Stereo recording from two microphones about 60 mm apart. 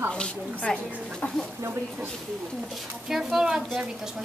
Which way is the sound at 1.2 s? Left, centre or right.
Left.